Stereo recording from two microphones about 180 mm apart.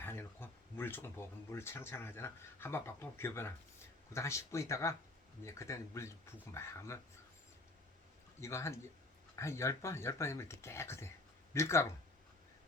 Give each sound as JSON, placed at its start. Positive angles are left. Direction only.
{"t": 0.0, "sound": "speech", "side_deg": 15}
{"t": 8.4, "sound": "speech", "side_deg": 15}